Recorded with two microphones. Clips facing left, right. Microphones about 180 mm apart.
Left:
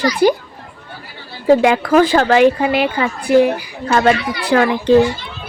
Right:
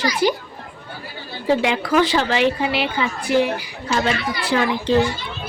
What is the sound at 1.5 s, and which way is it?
A woman's voice, 50° left (ahead or behind).